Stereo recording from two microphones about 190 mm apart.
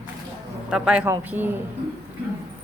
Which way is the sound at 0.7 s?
5° right (ahead or behind).